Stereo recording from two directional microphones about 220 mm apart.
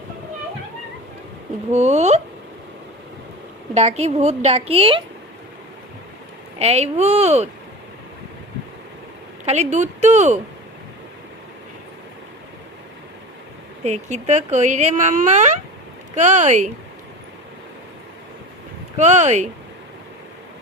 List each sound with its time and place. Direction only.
1.7 s speech: 30° right (ahead or behind)
3.8 s speech: 30° right (ahead or behind)
6.6 s speech: 30° right (ahead or behind)
9.5 s speech: 30° right (ahead or behind)
13.8 s speech: 30° right (ahead or behind)
18.9 s speech: 30° right (ahead or behind)